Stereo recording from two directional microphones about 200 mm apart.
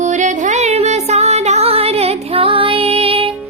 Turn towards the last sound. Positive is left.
turn(degrees=-25)  # may be behind; listen again after turning